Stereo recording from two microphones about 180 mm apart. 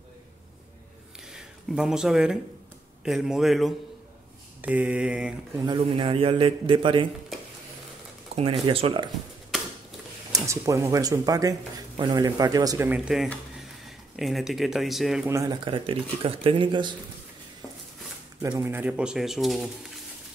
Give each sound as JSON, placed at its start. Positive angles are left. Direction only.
{"t": 1.2, "sound": "a sound", "side_deg": -5}
{"t": 3.0, "sound": "speech", "side_deg": 0}
{"t": 4.6, "sound": "mantra", "side_deg": -5}
{"t": 5.7, "sound": "speech", "side_deg": -30}
{"t": 8.3, "sound": "a sound", "side_deg": -35}
{"t": 8.6, "sound": "speech", "side_deg": -30}
{"t": 9.5, "sound": "a sound", "side_deg": 0}
{"t": 10.3, "sound": "speech", "side_deg": -15}
{"t": 15.2, "sound": "speech", "side_deg": -20}
{"t": 18.4, "sound": "speech", "side_deg": -15}